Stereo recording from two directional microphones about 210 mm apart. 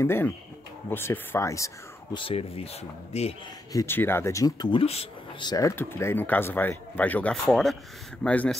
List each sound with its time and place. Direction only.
0.0 s speech: 10° left (ahead or behind)
2.1 s speech: 25° left (ahead or behind)
3.7 s speech: 10° left (ahead or behind)